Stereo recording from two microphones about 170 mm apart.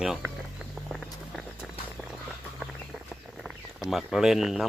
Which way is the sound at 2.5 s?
5° right (ahead or behind).